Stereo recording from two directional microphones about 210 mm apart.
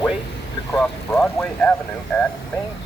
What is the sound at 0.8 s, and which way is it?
Speech, centre (ahead or behind).